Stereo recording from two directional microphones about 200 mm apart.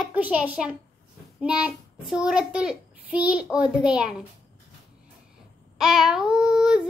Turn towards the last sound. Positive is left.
turn(degrees=-5)  # may be behind; listen again after turning